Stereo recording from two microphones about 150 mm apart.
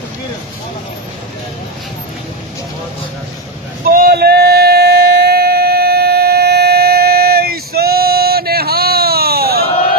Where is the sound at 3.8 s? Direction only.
75° right (ahead or behind); by 9.6 s 90° right.